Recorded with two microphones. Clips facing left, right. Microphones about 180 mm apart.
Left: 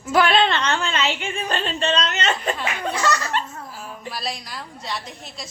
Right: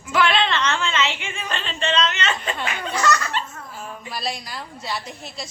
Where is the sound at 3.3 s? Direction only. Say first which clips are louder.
Left 2 dB; 50° left (ahead or behind).